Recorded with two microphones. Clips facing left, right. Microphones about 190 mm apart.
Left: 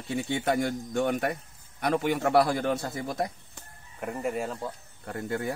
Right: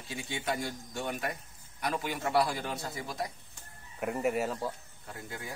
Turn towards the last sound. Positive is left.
turn(degrees=60)  # may be behind; listen again after turning